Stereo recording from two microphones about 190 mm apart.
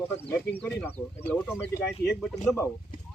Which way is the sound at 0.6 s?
5° left (ahead or behind).